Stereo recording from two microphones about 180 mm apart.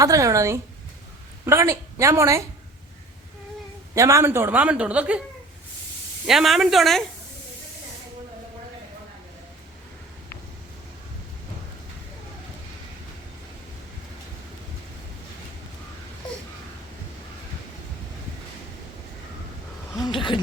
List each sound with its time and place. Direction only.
0.0 s a man's voice: 20° right (ahead or behind)
3.9 s a man's voice: 15° right (ahead or behind)
6.2 s speech: centre (ahead or behind)
20.1 s a sound: 25° left (ahead or behind)